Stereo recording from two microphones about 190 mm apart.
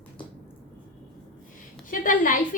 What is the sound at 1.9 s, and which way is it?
Speech, 45° left (ahead or behind).